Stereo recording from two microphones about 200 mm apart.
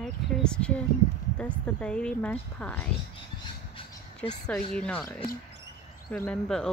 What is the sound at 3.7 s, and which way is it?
Crow, 30° left (ahead or behind).